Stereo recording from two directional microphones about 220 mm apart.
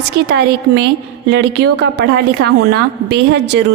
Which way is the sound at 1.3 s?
50° right (ahead or behind).